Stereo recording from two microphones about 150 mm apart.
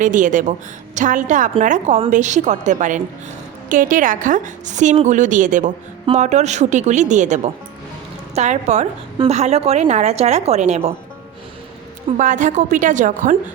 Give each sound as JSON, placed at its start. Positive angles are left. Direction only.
{"t": 0.0, "sound": "a woman's voice", "side_deg": -55}
{"t": 12.1, "sound": "a woman's voice", "side_deg": -55}